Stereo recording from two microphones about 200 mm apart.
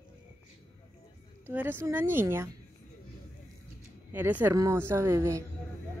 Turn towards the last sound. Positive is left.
turn(degrees=-15)  # may be behind; listen again after turning